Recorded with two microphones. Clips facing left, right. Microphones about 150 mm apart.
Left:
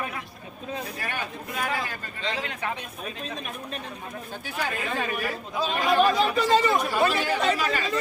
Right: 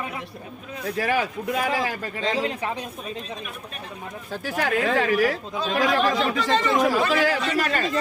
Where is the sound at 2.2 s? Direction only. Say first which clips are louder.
Right 5 dB; 35° right (ahead or behind).